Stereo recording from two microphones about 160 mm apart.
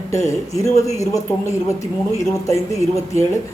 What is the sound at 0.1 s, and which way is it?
A man's voice, 20° left (ahead or behind).